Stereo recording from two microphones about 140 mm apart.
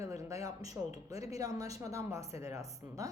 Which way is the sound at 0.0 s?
20° right (ahead or behind).